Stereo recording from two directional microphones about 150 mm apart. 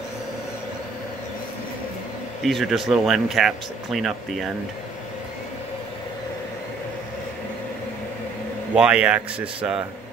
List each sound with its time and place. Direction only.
2.4 s speech: centre (ahead or behind)
8.7 s speech: 5° right (ahead or behind)